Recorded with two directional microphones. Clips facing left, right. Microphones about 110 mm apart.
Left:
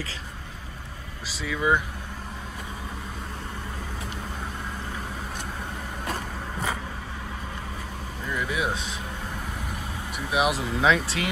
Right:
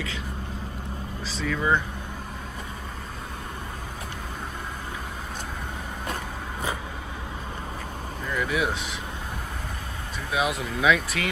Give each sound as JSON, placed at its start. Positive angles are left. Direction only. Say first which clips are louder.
{"t": 1.4, "sound": "speech", "louder": "even", "side_deg": 5}
{"t": 8.3, "sound": "vehicle", "louder": "right 2 dB", "side_deg": 20}
{"t": 10.3, "sound": "vehicle", "louder": "left 2 dB", "side_deg": 20}
{"t": 10.8, "sound": "speech", "louder": "right 1 dB", "side_deg": 30}